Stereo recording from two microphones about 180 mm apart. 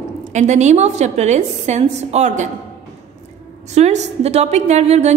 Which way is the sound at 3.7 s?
40° right (ahead or behind).